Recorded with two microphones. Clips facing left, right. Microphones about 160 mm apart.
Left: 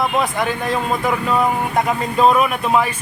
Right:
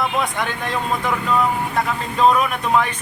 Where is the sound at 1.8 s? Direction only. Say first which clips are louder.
Left 4 dB; 20° left (ahead or behind).